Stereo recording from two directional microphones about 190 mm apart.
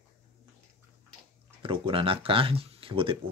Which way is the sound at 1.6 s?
30° right (ahead or behind).